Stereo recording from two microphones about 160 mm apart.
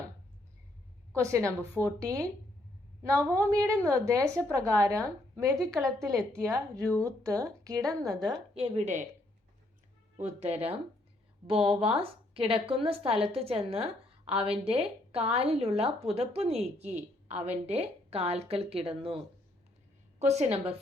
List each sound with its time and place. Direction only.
1.1 s a woman's voice: 20° right (ahead or behind)
1.5 s speech: 10° left (ahead or behind)
2.0 s a woman's voice: 20° right (ahead or behind)
8.5 s a woman's voice: 40° right (ahead or behind)
10.2 s a woman's voice: 45° right (ahead or behind)
11.6 s speech: 5° right (ahead or behind)
11.9 s a woman's voice: 35° right (ahead or behind)